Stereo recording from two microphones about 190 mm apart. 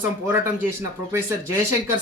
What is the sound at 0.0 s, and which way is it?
Speech, 10° right (ahead or behind).